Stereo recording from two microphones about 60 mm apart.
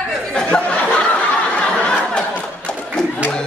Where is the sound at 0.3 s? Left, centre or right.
Centre.